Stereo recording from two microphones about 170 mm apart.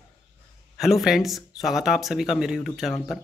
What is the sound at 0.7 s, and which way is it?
Speech, centre (ahead or behind).